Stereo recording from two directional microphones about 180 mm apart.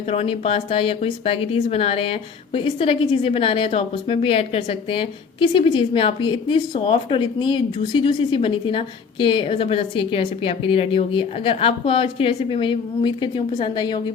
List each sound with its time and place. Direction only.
0.1 s speech: 35° left (ahead or behind)